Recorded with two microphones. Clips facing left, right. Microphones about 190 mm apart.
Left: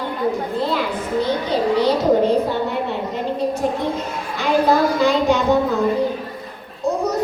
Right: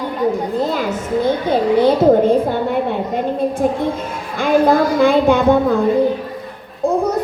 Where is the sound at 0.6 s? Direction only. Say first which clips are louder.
Right 2 dB; 45° right (ahead or behind).